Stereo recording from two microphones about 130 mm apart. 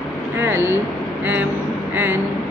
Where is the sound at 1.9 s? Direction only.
15° right (ahead or behind).